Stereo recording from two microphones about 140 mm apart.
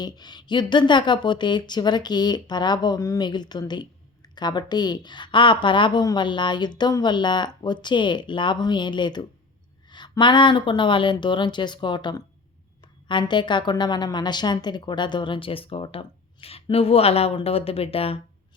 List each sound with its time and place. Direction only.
0.0 s a woman's voice: 30° left (ahead or behind)